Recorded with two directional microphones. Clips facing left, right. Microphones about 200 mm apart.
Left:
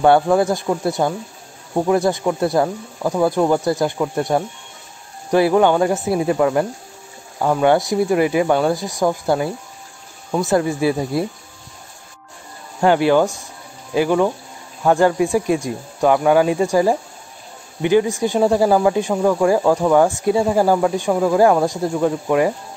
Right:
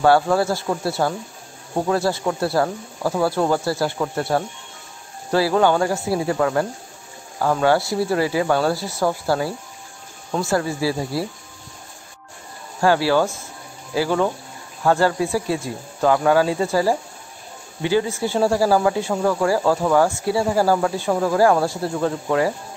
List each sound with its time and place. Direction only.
0.0 s speech: 20° left (ahead or behind)
12.8 s speech: 20° left (ahead or behind)